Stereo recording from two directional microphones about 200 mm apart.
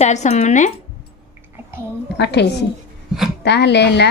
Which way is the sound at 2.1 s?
60° left (ahead or behind).